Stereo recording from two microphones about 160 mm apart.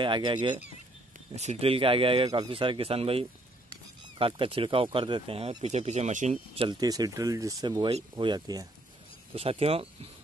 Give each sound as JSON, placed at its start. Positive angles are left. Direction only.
{"t": 0.0, "sound": "speech", "side_deg": -30}
{"t": 1.3, "sound": "speech", "side_deg": -45}
{"t": 6.5, "sound": "speech", "side_deg": -35}
{"t": 6.8, "sound": "speech", "side_deg": -25}
{"t": 9.3, "sound": "speech", "side_deg": -35}